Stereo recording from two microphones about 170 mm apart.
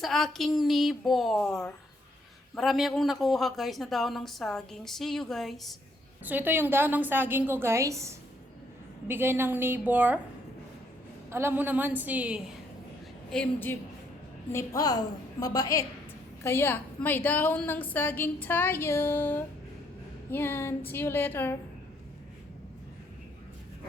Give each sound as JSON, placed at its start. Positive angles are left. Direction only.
{"t": 0.0, "sound": "speech", "side_deg": 0}
{"t": 6.2, "sound": "a woman's voice", "side_deg": -10}
{"t": 11.3, "sound": "a woman's voice", "side_deg": -15}
{"t": 13.3, "sound": "a woman's voice", "side_deg": 10}
{"t": 14.5, "sound": "a woman's voice", "side_deg": 20}